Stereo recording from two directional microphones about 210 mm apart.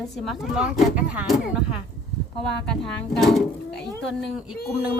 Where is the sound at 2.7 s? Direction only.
Centre (ahead or behind).